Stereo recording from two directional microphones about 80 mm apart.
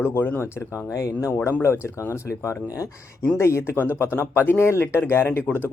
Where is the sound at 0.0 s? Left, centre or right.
Left.